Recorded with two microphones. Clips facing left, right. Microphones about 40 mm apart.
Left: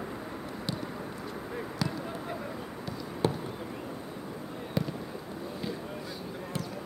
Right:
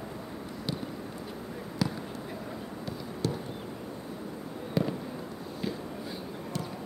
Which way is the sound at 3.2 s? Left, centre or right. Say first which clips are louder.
Left 3 dB; left.